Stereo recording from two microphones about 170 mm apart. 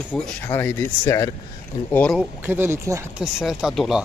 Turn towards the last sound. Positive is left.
turn(degrees=0)  # may be behind; listen again after turning